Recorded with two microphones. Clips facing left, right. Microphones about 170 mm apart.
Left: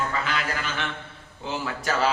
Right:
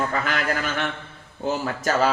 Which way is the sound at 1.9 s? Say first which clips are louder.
Right 4 dB; 45° right (ahead or behind).